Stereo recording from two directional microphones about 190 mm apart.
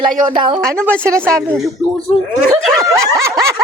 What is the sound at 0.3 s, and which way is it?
Speech, 25° right (ahead or behind).